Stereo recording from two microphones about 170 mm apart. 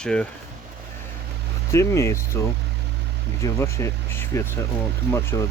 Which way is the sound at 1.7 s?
15° left (ahead or behind).